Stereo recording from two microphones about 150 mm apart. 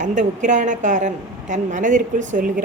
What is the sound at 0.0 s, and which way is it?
A woman's voice, 55° right (ahead or behind).